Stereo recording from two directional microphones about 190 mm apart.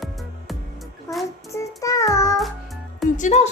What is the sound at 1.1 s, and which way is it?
Child singing, 15° left (ahead or behind).